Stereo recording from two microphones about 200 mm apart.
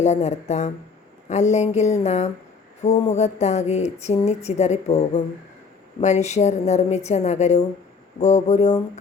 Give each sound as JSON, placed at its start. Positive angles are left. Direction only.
{"t": 0.0, "sound": "speech", "side_deg": 35}